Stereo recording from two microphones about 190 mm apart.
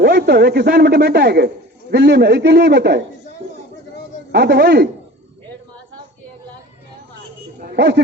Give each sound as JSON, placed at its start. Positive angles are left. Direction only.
{"t": 0.0, "sound": "a man's voice", "side_deg": -60}
{"t": 4.3, "sound": "a man's voice", "side_deg": -60}
{"t": 7.6, "sound": "a sound", "side_deg": -60}